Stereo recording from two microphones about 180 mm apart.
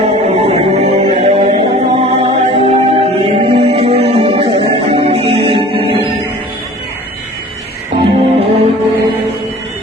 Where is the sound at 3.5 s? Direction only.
30° right (ahead or behind).